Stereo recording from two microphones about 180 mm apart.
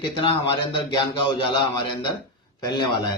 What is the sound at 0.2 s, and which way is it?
Speech, 25° left (ahead or behind).